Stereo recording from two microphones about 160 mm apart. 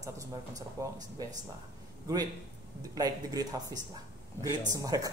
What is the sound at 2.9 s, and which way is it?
Speech, 25° right (ahead or behind).